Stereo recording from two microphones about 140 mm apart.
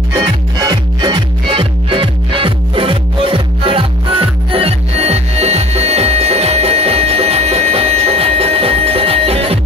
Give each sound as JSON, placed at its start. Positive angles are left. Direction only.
{"t": 0.1, "sound": "music", "side_deg": -25}